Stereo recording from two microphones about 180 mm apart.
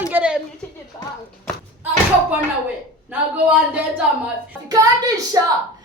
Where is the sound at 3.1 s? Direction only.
10° right (ahead or behind).